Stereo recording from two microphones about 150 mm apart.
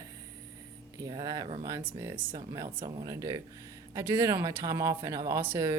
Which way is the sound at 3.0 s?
25° right (ahead or behind).